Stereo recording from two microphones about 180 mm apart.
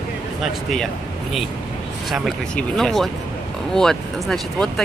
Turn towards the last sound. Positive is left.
turn(degrees=0)  # may be behind; listen again after turning